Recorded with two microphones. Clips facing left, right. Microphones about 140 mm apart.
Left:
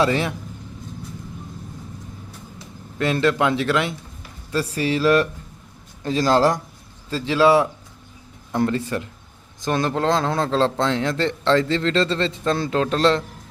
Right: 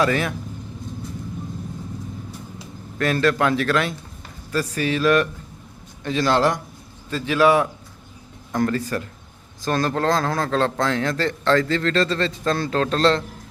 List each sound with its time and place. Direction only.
0.0 s a man's voice: 25° left (ahead or behind)
3.0 s a man's voice: 20° left (ahead or behind)